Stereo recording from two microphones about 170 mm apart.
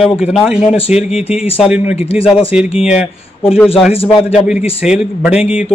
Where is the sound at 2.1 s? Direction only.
35° left (ahead or behind).